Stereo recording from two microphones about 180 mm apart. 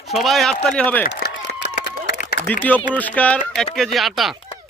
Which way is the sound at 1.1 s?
75° left (ahead or behind).